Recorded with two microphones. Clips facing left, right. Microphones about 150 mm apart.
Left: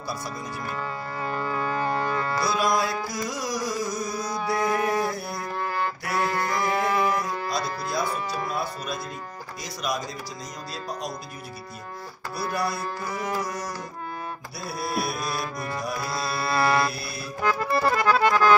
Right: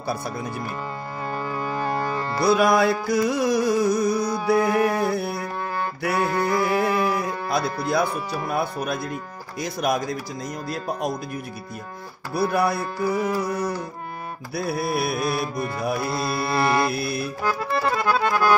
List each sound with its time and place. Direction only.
1.2 s music: 10° right (ahead or behind)
2.4 s music: 60° right (ahead or behind)
4.6 s mantra: 10° right (ahead or behind)
5.1 s music: 60° right (ahead or behind)
6.4 s a sound: 5° right (ahead or behind)
7.4 s music: 60° right (ahead or behind)
12.4 s music: 60° right (ahead or behind)
16.0 s carnatic music: 25° right (ahead or behind)
16.9 s music: 60° right (ahead or behind)
17.4 s accordion: 5° right (ahead or behind)
17.7 s music: 5° left (ahead or behind)